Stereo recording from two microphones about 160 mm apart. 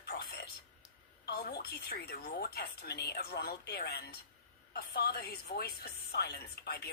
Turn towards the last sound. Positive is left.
turn(degrees=80)